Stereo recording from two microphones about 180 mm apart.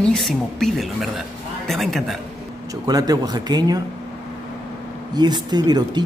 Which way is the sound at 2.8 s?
20° right (ahead or behind).